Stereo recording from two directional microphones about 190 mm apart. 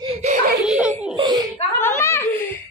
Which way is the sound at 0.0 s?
35° right (ahead or behind).